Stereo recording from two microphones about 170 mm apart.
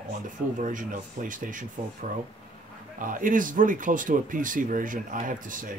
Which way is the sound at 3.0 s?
50° right (ahead or behind).